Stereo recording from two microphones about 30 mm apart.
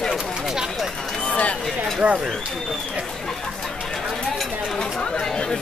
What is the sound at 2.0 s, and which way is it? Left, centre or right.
Speech, right.